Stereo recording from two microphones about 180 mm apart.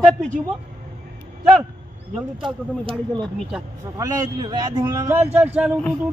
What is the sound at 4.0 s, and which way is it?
A man's voice, 20° right (ahead or behind).